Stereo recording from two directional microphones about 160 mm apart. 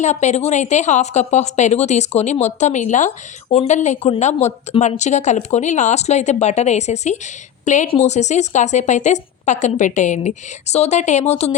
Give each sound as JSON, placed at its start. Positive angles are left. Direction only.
{"t": 0.0, "sound": "speech", "side_deg": 45}